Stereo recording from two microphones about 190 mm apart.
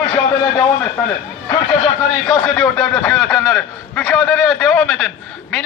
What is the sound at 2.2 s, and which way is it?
A man's voice, 5° left (ahead or behind).